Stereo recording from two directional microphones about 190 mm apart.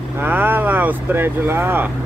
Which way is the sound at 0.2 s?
10° right (ahead or behind).